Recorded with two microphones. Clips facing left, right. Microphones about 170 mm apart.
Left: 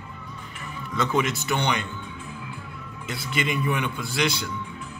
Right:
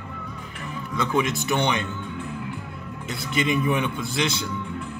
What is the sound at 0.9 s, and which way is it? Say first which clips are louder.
Speech: right 1 dB; 15° right (ahead or behind).